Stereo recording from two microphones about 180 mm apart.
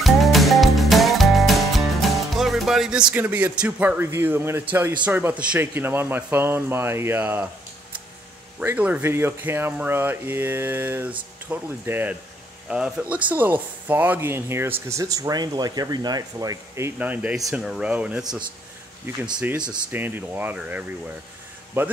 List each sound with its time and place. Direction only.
0.0 s music: centre (ahead or behind)
3.1 s speech: 10° right (ahead or behind)
8.5 s speech: 10° right (ahead or behind)
19.9 s speech: 10° right (ahead or behind)